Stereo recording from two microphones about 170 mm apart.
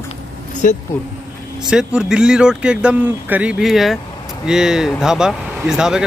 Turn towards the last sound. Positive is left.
turn(degrees=-5)  # may be behind; listen again after turning